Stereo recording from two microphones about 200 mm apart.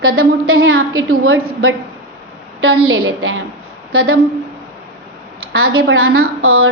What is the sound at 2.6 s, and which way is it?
A woman's voice, 90° right.